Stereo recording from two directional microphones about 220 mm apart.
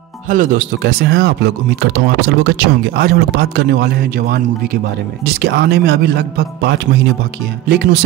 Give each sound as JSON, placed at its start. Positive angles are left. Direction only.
{"t": 0.3, "sound": "speech", "side_deg": -35}